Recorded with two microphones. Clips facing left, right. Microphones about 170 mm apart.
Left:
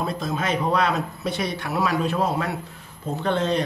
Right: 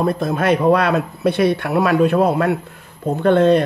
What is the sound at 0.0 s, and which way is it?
Speech, 55° right (ahead or behind).